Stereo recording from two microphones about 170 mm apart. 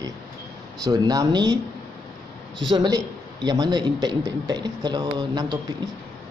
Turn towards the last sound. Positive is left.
turn(degrees=-25)  # may be behind; listen again after turning